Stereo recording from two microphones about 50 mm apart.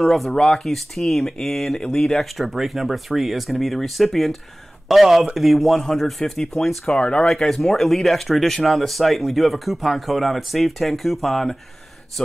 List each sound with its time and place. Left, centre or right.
0.0 s speech: centre
7.0 s speech: centre
7.2 s speech: centre